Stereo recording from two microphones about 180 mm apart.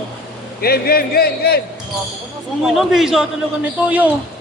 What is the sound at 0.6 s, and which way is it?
A man's voice, 60° left (ahead or behind).